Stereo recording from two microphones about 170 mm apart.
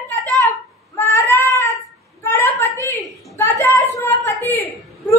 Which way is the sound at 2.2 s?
15° left (ahead or behind).